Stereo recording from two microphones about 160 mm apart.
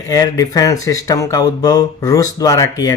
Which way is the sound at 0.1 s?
20° left (ahead or behind).